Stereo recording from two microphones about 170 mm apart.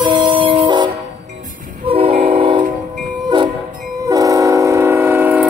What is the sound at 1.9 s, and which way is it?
Train, 35° right (ahead or behind).